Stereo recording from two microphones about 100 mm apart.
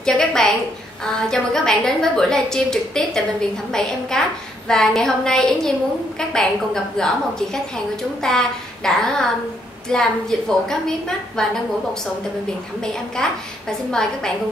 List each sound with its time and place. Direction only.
0.0 s a sound: 5° left (ahead or behind)
1.0 s a woman's voice: 5° left (ahead or behind)
12.8 s a woman's voice: 5° left (ahead or behind)